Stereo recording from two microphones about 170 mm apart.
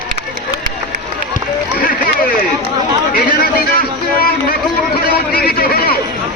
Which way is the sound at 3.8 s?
60° left (ahead or behind).